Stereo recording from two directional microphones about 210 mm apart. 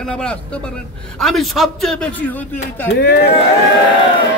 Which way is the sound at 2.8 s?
50° left (ahead or behind).